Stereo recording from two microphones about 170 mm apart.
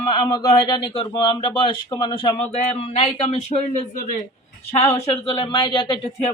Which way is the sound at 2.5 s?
40° left (ahead or behind).